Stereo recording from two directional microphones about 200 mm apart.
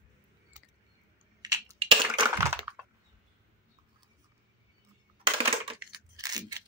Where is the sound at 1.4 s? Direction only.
20° right (ahead or behind).